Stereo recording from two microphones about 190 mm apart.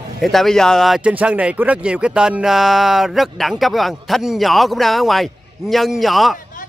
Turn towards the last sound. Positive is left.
turn(degrees=0)  # may be behind; listen again after turning